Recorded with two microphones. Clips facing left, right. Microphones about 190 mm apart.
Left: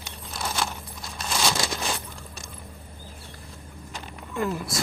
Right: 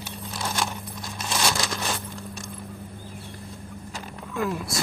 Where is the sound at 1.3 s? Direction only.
Centre (ahead or behind).